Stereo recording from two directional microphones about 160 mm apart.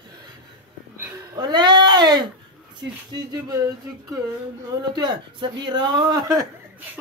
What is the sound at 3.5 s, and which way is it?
A man's voice, 20° right (ahead or behind).